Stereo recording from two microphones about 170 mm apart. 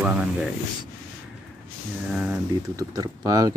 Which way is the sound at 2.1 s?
5° right (ahead or behind).